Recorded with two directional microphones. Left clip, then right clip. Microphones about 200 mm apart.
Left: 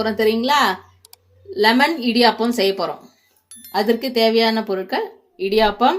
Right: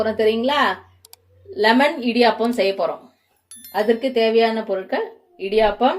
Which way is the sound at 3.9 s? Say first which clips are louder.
Even; 40° left (ahead or behind).